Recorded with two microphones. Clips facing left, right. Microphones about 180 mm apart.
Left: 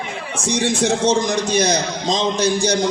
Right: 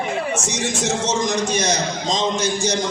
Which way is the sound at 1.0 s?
30° left (ahead or behind).